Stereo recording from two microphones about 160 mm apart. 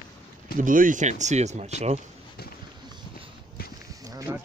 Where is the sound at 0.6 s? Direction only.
55° right (ahead or behind).